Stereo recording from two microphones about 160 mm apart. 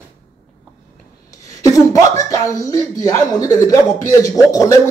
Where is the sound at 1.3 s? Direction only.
20° left (ahead or behind).